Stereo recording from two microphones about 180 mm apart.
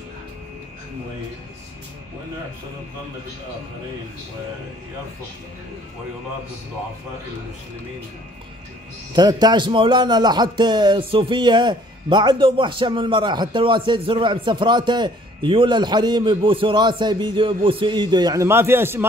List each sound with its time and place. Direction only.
9.1 s a man's voice: 25° right (ahead or behind)